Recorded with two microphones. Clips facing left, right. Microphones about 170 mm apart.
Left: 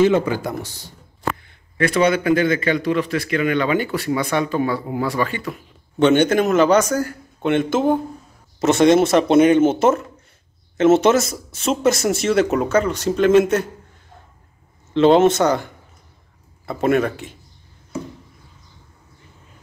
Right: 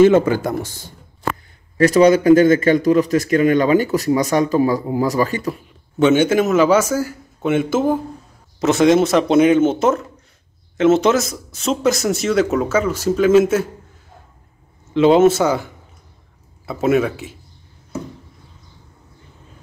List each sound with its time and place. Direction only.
0.0 s speech: 50° right (ahead or behind)
1.8 s a man's voice: 40° right (ahead or behind)
5.9 s speech: 5° right (ahead or behind)
15.0 s speech: 5° right (ahead or behind)